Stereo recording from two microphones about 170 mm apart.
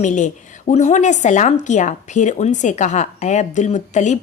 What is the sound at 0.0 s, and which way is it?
Speech, 45° left (ahead or behind).